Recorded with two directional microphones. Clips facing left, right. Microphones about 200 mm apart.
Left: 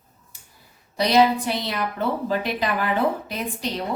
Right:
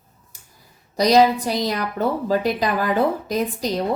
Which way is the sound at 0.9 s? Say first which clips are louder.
Right 3 dB; 40° right (ahead or behind).